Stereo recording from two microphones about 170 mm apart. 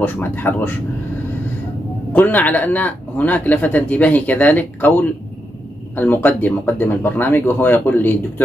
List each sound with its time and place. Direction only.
0.0 s speech: 10° left (ahead or behind)
2.1 s speech: 10° left (ahead or behind)